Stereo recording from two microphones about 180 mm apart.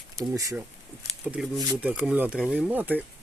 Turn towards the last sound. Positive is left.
turn(degrees=-10)  # may be behind; listen again after turning